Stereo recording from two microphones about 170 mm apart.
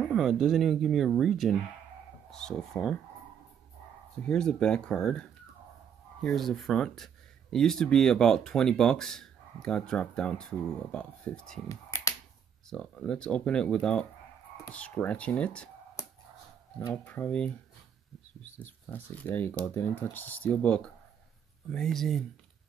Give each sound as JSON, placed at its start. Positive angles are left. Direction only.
{"t": 0.0, "sound": "speech", "side_deg": 0}
{"t": 4.3, "sound": "speech", "side_deg": 5}
{"t": 6.2, "sound": "speech", "side_deg": 0}
{"t": 11.7, "sound": "finger snapping", "side_deg": 20}
{"t": 12.6, "sound": "speech", "side_deg": 5}
{"t": 16.9, "sound": "speech", "side_deg": 10}
{"t": 18.9, "sound": "speech", "side_deg": 10}